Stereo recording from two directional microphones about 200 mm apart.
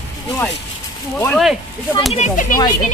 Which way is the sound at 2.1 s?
35° left (ahead or behind).